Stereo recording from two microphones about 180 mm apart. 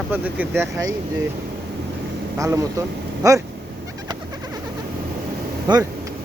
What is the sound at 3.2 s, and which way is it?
Speech, 20° right (ahead or behind).